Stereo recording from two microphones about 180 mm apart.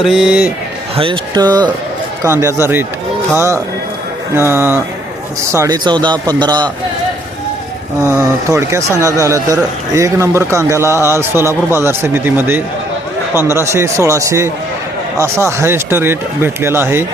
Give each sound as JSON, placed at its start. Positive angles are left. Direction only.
{"t": 0.0, "sound": "a man's voice", "side_deg": 0}
{"t": 0.9, "sound": "a man's voice", "side_deg": -30}
{"t": 8.4, "sound": "a man's voice", "side_deg": -15}